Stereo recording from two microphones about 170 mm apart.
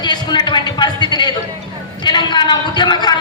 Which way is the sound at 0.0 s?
25° left (ahead or behind).